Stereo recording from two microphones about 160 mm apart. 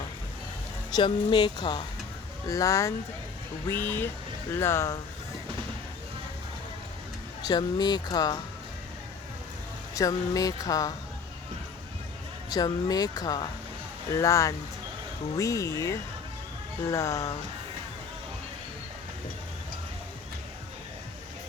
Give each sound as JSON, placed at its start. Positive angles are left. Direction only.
{"t": 0.9, "sound": "speech", "side_deg": 30}
{"t": 7.4, "sound": "speech", "side_deg": 25}
{"t": 9.9, "sound": "speech", "side_deg": 20}
{"t": 12.5, "sound": "speech", "side_deg": 25}